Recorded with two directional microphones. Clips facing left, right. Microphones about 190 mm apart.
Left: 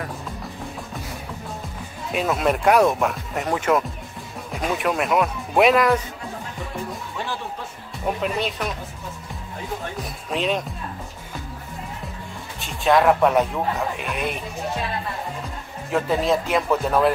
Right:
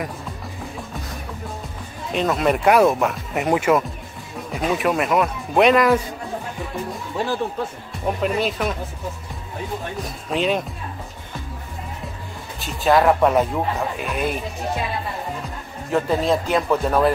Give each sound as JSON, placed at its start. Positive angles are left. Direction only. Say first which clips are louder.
{"t": 2.1, "sound": "speech", "louder": "right 2 dB", "side_deg": 0}
{"t": 3.4, "sound": "speech", "louder": "right 4 dB", "side_deg": -10}
{"t": 4.5, "sound": "speech", "louder": "right 3 dB", "side_deg": 0}
{"t": 8.2, "sound": "speech", "louder": "right 6 dB", "side_deg": 0}
{"t": 10.0, "sound": "speech", "louder": "right 3 dB", "side_deg": 0}
{"t": 12.5, "sound": "speech", "louder": "right 1 dB", "side_deg": 0}
{"t": 15.9, "sound": "speech", "louder": "right 1 dB", "side_deg": 0}